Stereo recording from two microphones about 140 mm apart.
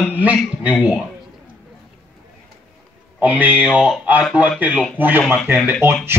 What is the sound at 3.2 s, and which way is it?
Speech, 10° right (ahead or behind).